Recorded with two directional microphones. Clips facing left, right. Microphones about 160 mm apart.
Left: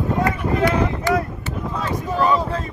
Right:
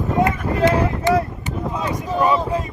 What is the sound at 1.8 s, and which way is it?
Speech, 15° right (ahead or behind).